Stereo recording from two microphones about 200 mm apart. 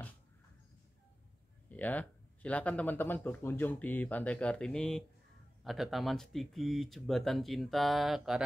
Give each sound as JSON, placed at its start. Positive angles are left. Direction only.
{"t": 1.7, "sound": "speech", "side_deg": 10}